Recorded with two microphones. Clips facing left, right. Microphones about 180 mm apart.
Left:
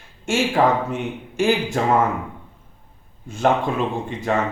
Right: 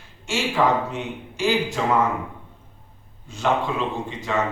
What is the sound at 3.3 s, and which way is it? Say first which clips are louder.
Speech: left 3 dB; 50° left (ahead or behind).